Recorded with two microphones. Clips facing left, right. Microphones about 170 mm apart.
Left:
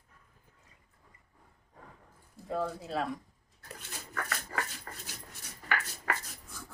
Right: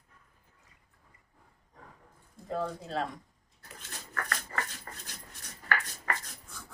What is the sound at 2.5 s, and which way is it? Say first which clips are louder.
Speech: even; 5° left (ahead or behind).